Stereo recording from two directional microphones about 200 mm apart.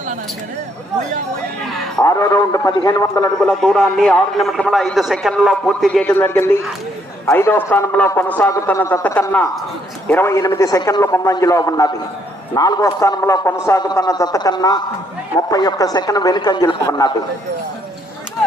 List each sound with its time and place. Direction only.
2.0 s a man's voice: 15° left (ahead or behind)
3.4 s a man's voice: centre (ahead or behind); by 17.2 s 20° left (ahead or behind)